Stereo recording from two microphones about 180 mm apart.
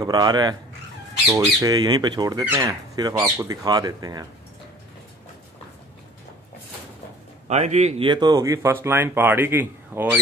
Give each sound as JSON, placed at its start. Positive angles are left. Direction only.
{"t": 0.0, "sound": "speech", "side_deg": -20}
{"t": 7.4, "sound": "speech", "side_deg": -40}